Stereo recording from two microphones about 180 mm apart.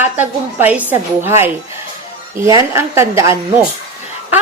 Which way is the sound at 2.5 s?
15° right (ahead or behind).